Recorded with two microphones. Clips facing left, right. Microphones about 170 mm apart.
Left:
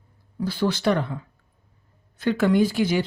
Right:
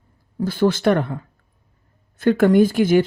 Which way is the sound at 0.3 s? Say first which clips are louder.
Right 6 dB; 50° right (ahead or behind).